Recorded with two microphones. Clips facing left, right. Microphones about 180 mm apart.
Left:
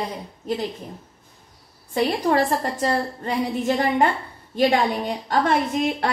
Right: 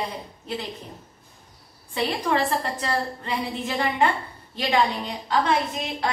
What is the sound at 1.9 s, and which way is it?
A woman's voice, 45° left (ahead or behind).